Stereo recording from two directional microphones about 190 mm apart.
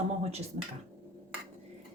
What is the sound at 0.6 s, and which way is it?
Speech, 40° right (ahead or behind).